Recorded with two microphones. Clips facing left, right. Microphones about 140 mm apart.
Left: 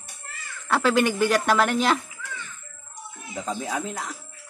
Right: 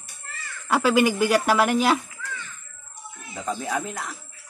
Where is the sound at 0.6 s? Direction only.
10° right (ahead or behind).